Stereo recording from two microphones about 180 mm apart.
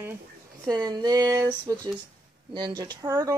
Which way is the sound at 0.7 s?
20° right (ahead or behind).